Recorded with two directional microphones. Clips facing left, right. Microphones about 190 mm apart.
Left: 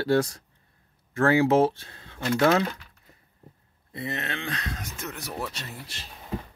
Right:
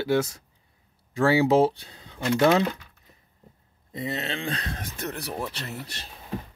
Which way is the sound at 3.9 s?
20° right (ahead or behind).